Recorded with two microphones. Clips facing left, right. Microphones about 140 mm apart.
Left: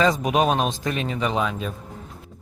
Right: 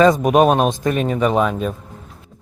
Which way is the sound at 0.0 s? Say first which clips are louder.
Right 7 dB; 50° right (ahead or behind).